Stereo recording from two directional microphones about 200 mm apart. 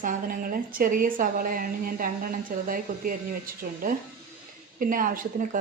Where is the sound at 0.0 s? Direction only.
45° right (ahead or behind).